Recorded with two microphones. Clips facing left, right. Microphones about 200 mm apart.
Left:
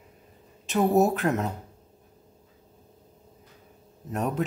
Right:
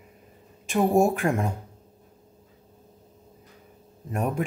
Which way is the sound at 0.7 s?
10° right (ahead or behind).